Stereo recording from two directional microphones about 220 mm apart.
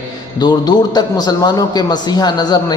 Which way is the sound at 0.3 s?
20° left (ahead or behind).